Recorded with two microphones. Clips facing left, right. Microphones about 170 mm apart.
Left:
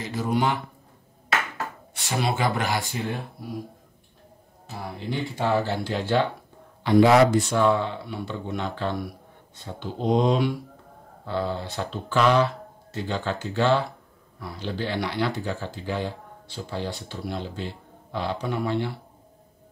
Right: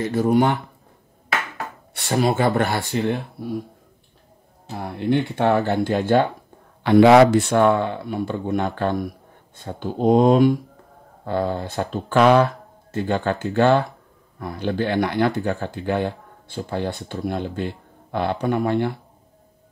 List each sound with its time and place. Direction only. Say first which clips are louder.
0.0 s speech: right 7 dB; 50° right (ahead or behind)
2.1 s speech: right 6 dB; 45° right (ahead or behind); by 3.2 s 65° right (ahead or behind)
4.8 s speech: right 9 dB; 65° right (ahead or behind)